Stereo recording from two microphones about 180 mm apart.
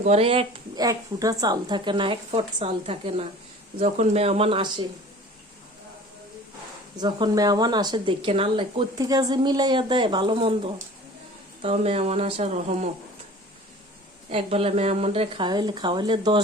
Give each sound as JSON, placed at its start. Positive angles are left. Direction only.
{"t": 0.0, "sound": "speech", "side_deg": -35}
{"t": 6.9, "sound": "speech", "side_deg": -20}
{"t": 11.6, "sound": "speech", "side_deg": -35}
{"t": 14.3, "sound": "speech", "side_deg": -35}